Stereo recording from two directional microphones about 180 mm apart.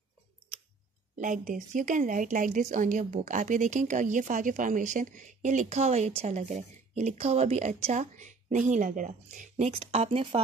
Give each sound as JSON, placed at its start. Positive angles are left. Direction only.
{"t": 1.1, "sound": "speech", "side_deg": -45}